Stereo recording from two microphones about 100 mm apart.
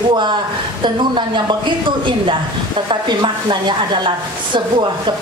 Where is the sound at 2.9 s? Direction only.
50° right (ahead or behind).